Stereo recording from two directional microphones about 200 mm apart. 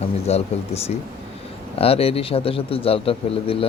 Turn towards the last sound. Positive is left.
turn(degrees=30)  # may be behind; listen again after turning